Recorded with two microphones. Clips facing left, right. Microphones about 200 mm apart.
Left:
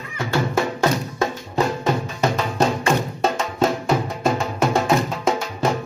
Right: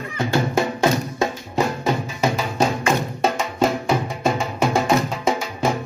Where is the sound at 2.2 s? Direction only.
5° right (ahead or behind).